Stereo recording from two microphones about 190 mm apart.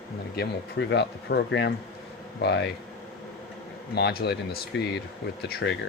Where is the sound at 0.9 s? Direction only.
65° left (ahead or behind).